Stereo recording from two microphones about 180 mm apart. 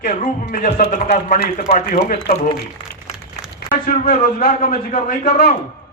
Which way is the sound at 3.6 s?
45° left (ahead or behind).